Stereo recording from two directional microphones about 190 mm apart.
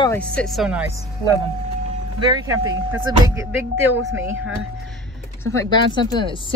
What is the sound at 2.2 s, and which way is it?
Speech, 20° right (ahead or behind).